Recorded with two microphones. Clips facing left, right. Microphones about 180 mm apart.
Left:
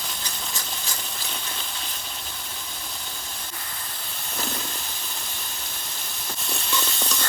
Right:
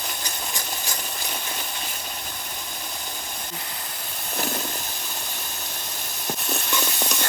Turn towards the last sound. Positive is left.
turn(degrees=-15)  # may be behind; listen again after turning